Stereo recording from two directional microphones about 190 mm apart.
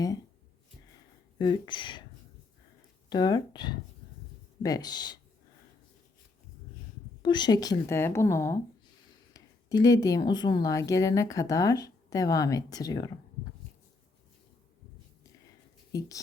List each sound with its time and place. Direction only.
1.4 s a woman's voice: 25° left (ahead or behind)
3.1 s a woman's voice: 20° left (ahead or behind)
7.2 s a woman's voice: 25° left (ahead or behind)
15.9 s a woman's voice: 20° left (ahead or behind)